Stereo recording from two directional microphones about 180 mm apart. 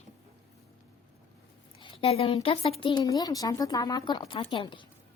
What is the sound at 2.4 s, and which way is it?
A woman's voice, 30° left (ahead or behind).